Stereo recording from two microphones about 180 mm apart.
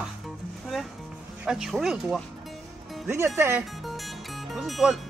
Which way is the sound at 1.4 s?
Centre (ahead or behind).